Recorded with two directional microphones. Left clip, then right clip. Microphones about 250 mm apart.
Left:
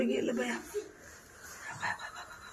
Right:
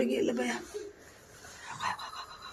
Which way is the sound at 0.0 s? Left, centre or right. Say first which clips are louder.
Right 2 dB; centre.